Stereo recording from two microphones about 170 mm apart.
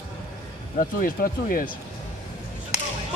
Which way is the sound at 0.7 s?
55° left (ahead or behind).